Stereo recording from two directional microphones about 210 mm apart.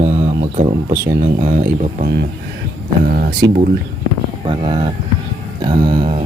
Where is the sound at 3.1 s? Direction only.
45° right (ahead or behind).